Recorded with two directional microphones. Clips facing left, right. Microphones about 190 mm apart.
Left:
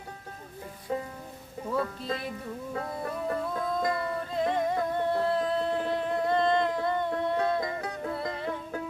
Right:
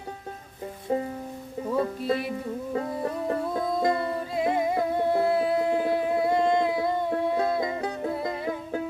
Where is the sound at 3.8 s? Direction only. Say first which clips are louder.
Right 4 dB; 25° right (ahead or behind).